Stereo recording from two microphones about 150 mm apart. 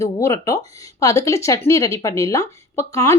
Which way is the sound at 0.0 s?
20° left (ahead or behind).